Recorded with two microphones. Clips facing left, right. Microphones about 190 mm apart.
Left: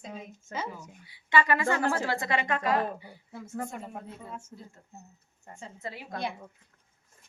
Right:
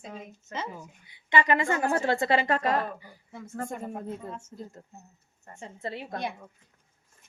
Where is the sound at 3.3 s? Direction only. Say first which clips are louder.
Even; 5° left (ahead or behind).